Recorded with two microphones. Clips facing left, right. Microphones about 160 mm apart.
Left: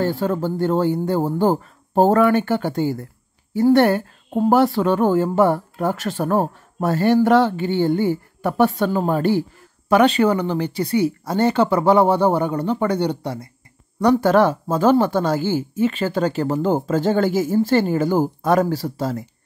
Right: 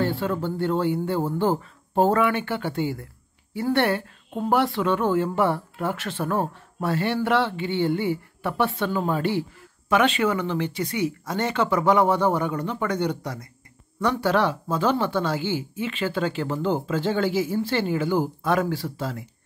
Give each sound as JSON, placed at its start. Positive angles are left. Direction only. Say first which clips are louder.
{"t": 0.0, "sound": "speech", "louder": "left 4 dB", "side_deg": 40}